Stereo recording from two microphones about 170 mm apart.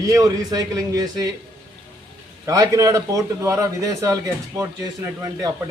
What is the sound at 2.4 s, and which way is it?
A man's voice, 20° right (ahead or behind).